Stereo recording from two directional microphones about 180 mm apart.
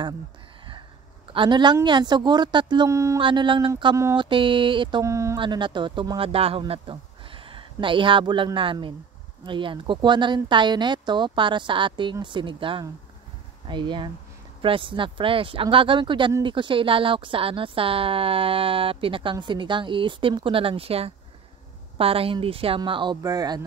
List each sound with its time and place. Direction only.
1.3 s speech: 25° right (ahead or behind)
3.2 s speech: 25° right (ahead or behind)
5.0 s speech: 15° right (ahead or behind)